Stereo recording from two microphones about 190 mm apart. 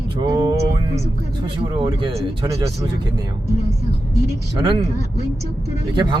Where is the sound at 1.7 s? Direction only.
25° right (ahead or behind).